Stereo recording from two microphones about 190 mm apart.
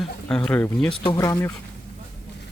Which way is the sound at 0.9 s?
25° left (ahead or behind).